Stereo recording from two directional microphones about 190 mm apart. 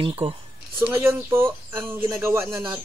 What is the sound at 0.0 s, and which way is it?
Speech, 30° right (ahead or behind).